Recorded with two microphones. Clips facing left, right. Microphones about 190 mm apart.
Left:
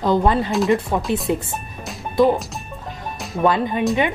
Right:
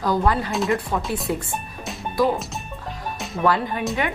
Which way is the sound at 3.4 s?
20° left (ahead or behind).